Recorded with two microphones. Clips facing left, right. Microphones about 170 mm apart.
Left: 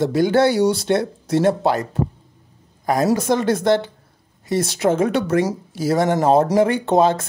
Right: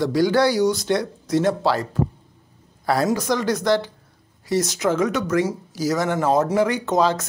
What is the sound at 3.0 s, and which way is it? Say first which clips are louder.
Speech: left 4 dB; 25° left (ahead or behind).